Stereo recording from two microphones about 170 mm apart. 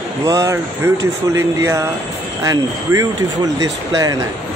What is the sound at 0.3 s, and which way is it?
Speech, 20° right (ahead or behind).